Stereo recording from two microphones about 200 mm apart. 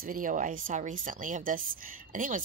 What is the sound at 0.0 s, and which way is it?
A woman's voice, 45° right (ahead or behind).